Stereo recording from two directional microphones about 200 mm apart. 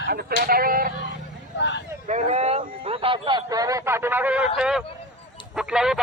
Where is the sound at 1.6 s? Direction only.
60° left (ahead or behind).